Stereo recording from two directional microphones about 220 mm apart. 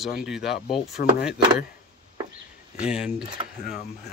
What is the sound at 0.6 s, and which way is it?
Speech, 25° left (ahead or behind).